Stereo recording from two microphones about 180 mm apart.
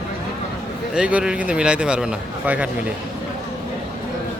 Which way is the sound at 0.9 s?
5° right (ahead or behind).